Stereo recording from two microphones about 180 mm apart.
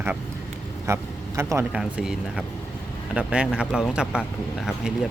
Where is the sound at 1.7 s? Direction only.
5° right (ahead or behind).